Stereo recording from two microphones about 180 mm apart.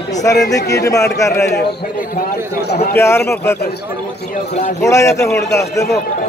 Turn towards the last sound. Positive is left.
turn(degrees=15)  # may be behind; listen again after turning